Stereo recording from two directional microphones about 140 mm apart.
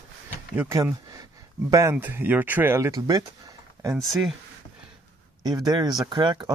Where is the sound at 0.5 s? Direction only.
20° right (ahead or behind).